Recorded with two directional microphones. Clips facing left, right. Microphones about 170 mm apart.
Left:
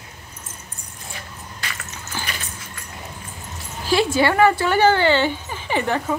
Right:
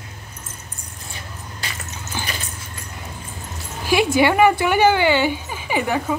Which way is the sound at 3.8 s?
15° right (ahead or behind).